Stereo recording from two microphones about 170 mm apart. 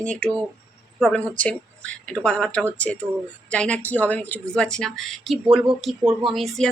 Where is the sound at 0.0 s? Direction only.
5° left (ahead or behind).